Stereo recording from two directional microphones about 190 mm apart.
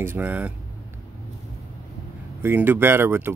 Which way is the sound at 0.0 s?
10° right (ahead or behind).